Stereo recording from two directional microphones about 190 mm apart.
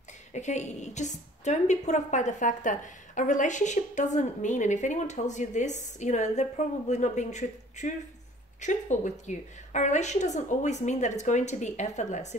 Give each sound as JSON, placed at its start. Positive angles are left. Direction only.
{"t": 0.3, "sound": "a woman's voice", "side_deg": 40}